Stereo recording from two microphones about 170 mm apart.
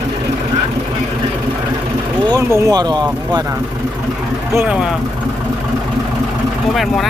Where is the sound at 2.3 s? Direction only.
15° right (ahead or behind).